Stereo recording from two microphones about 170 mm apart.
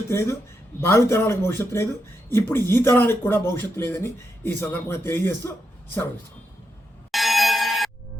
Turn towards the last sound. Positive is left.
turn(degrees=0)  # may be behind; listen again after turning